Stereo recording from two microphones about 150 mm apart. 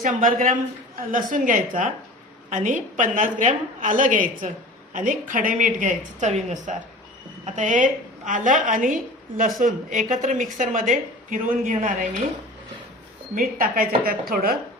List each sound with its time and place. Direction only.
0.0 s a woman's voice: 65° right (ahead or behind)
13.3 s speech: 75° right (ahead or behind)